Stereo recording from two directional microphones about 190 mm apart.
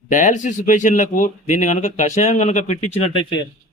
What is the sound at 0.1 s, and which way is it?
Speech, 40° left (ahead or behind).